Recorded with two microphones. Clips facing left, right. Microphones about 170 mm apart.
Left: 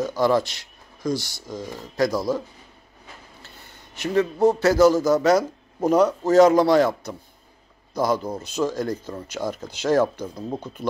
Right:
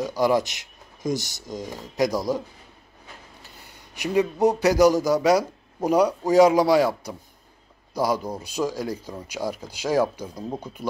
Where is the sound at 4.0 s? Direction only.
15° right (ahead or behind).